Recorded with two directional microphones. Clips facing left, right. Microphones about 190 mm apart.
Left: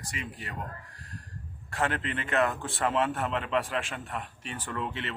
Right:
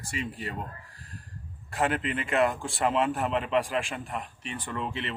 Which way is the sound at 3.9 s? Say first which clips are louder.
Right 2 dB; 5° right (ahead or behind).